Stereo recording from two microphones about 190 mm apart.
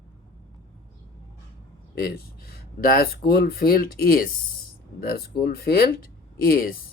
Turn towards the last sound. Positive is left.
turn(degrees=50)  # may be behind; listen again after turning